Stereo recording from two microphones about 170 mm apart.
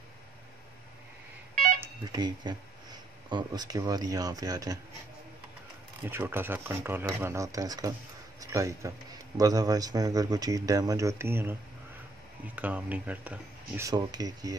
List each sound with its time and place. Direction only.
2.1 s speech: 25° right (ahead or behind)
6.0 s a man's voice: 10° right (ahead or behind)
13.8 s speech: 25° right (ahead or behind)